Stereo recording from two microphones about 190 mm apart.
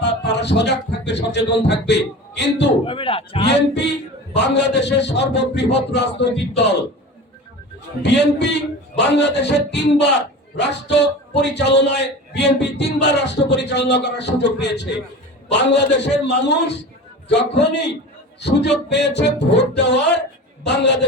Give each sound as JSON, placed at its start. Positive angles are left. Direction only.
{"t": 0.0, "sound": "music", "side_deg": 65}
{"t": 2.8, "sound": "a man's voice", "side_deg": 30}
{"t": 3.5, "sound": "speech", "side_deg": 65}
{"t": 8.0, "sound": "speech", "side_deg": 65}